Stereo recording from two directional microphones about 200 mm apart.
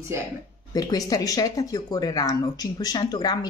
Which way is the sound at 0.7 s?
20° left (ahead or behind).